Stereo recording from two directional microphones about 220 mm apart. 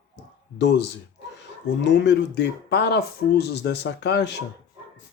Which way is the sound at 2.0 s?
55° left (ahead or behind).